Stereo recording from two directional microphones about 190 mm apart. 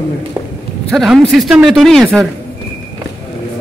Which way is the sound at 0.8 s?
Centre (ahead or behind).